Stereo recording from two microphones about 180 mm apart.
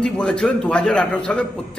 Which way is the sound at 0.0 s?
5° left (ahead or behind).